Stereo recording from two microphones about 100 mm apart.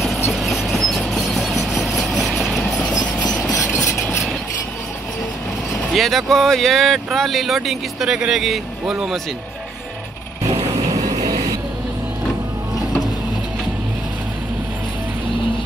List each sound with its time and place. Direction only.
0.3 s train: centre (ahead or behind)
2.1 s vehicle: centre (ahead or behind)
3.2 s vehicle: 15° left (ahead or behind)
3.4 s train: centre (ahead or behind)
5.9 s speech: centre (ahead or behind)
11.1 s vehicle: 45° right (ahead or behind)